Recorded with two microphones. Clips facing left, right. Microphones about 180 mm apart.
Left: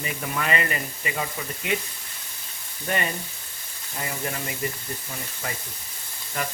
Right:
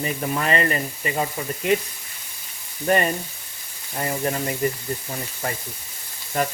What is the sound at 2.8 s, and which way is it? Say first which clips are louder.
Speech: right 7 dB; 40° right (ahead or behind).